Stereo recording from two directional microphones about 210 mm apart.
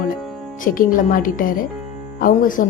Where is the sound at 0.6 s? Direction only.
40° left (ahead or behind).